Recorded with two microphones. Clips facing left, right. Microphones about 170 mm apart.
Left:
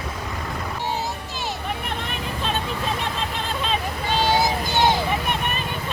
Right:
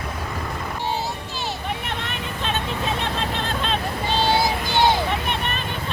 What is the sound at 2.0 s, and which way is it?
Vehicle, centre (ahead or behind).